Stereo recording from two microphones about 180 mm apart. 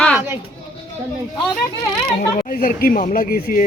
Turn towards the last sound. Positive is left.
turn(degrees=50)  # may be behind; listen again after turning